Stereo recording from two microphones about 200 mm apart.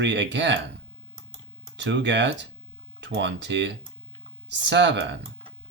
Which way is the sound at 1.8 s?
65° right (ahead or behind).